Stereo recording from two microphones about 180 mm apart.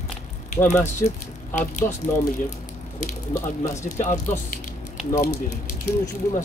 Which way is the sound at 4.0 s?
45° left (ahead or behind).